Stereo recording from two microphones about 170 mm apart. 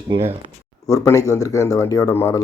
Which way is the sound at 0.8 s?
20° left (ahead or behind).